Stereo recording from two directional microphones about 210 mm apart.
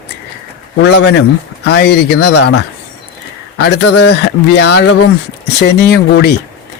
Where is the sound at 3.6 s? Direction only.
55° left (ahead or behind).